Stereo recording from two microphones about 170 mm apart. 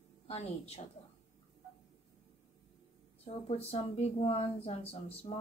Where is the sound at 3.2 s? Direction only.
35° left (ahead or behind).